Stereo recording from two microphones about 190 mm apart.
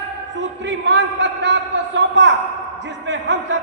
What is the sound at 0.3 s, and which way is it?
A man's voice, 70° right (ahead or behind).